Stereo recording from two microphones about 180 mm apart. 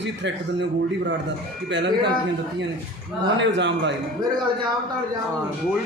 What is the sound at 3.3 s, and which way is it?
Speech, 85° right.